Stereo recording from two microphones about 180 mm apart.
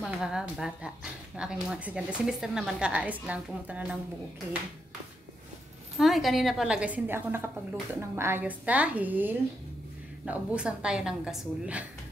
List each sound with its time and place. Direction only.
0.0 s speech: 5° right (ahead or behind)
5.9 s speech: centre (ahead or behind)